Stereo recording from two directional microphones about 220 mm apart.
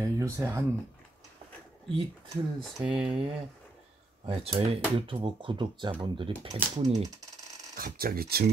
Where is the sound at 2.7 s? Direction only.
5° right (ahead or behind).